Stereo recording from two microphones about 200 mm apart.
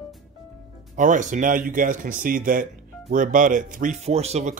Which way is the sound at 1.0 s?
40° right (ahead or behind).